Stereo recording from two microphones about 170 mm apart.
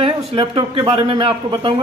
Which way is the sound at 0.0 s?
30° right (ahead or behind).